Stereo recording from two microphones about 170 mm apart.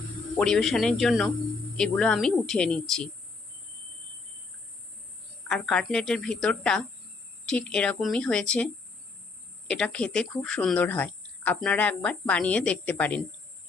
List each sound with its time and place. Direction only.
0.3 s a woman's voice: 5° left (ahead or behind)
5.5 s a woman's voice: 5° left (ahead or behind)